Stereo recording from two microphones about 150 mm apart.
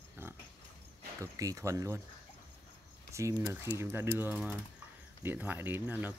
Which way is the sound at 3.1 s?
20° right (ahead or behind).